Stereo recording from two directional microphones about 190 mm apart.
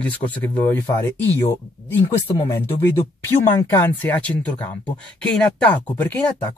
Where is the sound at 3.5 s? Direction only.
15° left (ahead or behind).